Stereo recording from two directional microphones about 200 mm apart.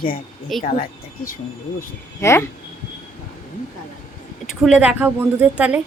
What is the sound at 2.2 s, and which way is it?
Speech, 15° left (ahead or behind).